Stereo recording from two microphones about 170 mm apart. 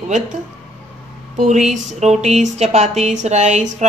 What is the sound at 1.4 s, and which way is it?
Speech, 45° right (ahead or behind).